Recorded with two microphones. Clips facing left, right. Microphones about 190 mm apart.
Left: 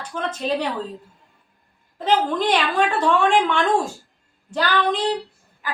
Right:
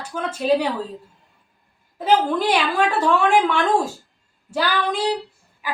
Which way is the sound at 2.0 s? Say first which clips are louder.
Right 2 dB; 10° right (ahead or behind).